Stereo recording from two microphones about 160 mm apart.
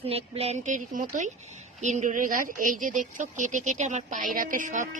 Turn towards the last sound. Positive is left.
turn(degrees=-50)  # may be behind; listen again after turning